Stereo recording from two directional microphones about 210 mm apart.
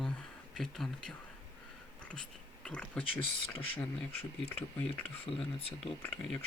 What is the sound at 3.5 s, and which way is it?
Speech, 25° left (ahead or behind).